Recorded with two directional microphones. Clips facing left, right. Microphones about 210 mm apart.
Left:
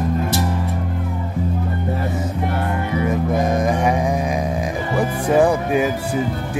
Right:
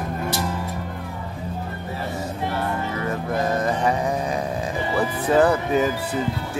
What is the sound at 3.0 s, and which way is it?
Music, 15° left (ahead or behind).